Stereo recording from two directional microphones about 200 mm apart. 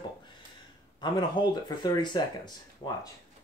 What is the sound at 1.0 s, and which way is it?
Speech, 20° left (ahead or behind).